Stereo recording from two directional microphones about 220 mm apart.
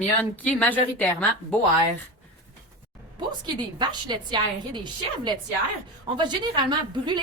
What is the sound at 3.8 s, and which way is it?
A woman's voice, 20° right (ahead or behind).